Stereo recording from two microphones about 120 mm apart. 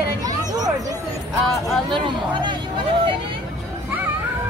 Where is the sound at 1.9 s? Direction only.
40° right (ahead or behind).